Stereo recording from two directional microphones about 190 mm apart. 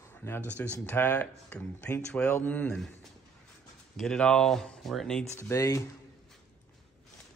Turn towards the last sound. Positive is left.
turn(degrees=15)  # may be behind; listen again after turning